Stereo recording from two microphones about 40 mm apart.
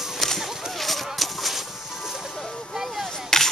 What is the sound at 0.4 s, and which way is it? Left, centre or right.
Horse, centre.